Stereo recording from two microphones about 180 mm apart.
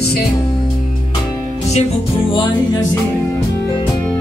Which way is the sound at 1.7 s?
35° left (ahead or behind).